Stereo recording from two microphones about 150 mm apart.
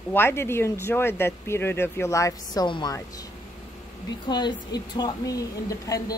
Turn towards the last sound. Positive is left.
turn(degrees=20)  # may be behind; listen again after turning